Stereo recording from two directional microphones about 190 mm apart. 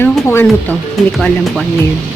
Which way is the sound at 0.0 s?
10° left (ahead or behind).